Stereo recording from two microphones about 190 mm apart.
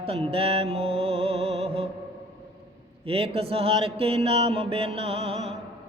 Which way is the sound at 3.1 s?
30° right (ahead or behind).